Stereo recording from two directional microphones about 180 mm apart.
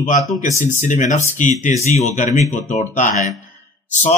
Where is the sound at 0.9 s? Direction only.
40° left (ahead or behind).